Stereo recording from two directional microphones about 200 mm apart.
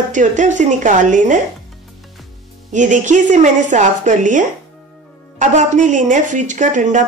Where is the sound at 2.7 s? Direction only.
40° right (ahead or behind).